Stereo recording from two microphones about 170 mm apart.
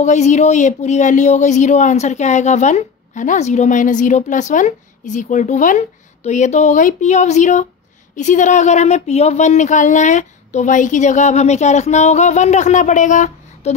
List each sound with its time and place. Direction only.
0.0 s speech: 45° left (ahead or behind)